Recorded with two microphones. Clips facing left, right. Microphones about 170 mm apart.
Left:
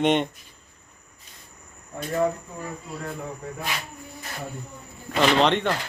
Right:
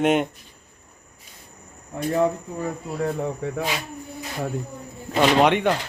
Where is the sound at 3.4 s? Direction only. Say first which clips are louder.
Right 7 dB; 70° right (ahead or behind).